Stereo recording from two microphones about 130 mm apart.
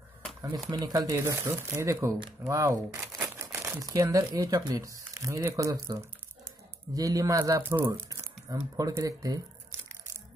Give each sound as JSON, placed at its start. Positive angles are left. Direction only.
{"t": 0.4, "sound": "speech", "side_deg": -35}